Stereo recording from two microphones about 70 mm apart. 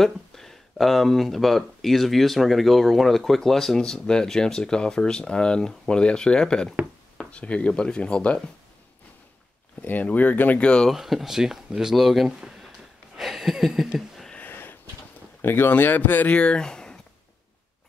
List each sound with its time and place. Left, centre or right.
0.0 s speech: centre
9.8 s speech: left
10.6 s speech: centre
10.9 s speech: centre
12.3 s a sound: centre
14.3 s a sound: left
15.4 s speech: left; by 17.0 s centre